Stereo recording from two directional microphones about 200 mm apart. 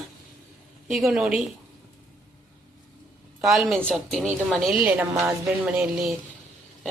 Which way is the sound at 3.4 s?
Centre (ahead or behind).